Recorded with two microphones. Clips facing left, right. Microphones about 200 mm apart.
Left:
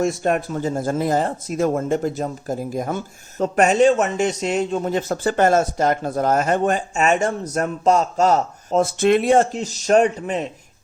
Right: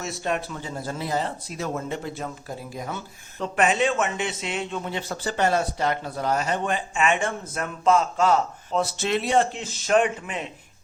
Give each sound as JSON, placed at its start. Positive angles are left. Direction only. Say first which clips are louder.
{"t": 0.0, "sound": "speech", "louder": "left 8 dB", "side_deg": 50}